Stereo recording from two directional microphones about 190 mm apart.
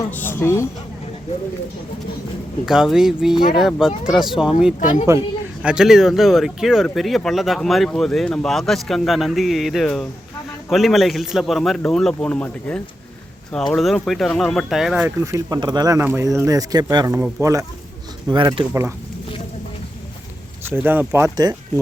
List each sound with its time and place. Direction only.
0.1 s a woman's voice: 10° left (ahead or behind)
2.6 s speech: 5° right (ahead or behind)
4.8 s speech: 45° left (ahead or behind)
5.6 s speech: 5° right (ahead or behind)
15.2 s speech: 15° right (ahead or behind)
20.7 s speech: 10° right (ahead or behind)